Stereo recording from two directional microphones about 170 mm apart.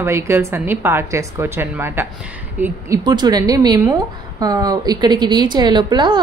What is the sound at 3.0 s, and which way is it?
Speech, 25° right (ahead or behind).